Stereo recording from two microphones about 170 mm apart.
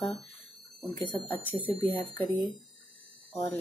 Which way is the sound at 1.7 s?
35° right (ahead or behind).